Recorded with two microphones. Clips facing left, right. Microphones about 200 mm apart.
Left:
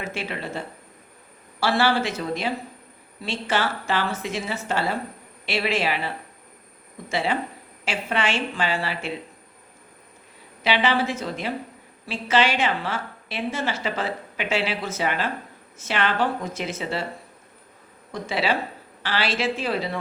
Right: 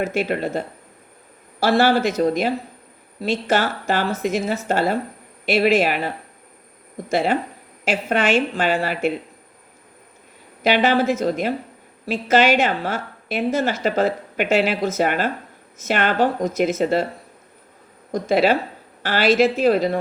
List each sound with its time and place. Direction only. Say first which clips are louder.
0.0 s speech: right 9 dB; 45° right (ahead or behind)
10.6 s speech: right 5 dB; 45° right (ahead or behind)
18.1 s speech: right 8 dB; 45° right (ahead or behind)